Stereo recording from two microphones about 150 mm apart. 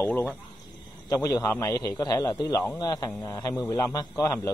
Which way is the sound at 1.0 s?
20° left (ahead or behind).